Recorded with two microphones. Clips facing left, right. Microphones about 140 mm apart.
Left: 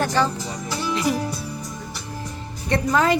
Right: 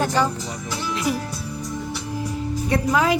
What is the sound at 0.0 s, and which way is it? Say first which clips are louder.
Speech: even; 15° right (ahead or behind).